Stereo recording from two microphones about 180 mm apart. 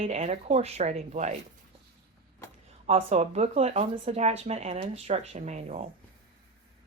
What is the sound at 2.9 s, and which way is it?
Speech, 35° right (ahead or behind).